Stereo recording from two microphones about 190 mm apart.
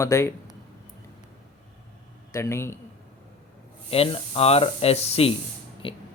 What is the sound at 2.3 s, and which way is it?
Speech, 15° left (ahead or behind).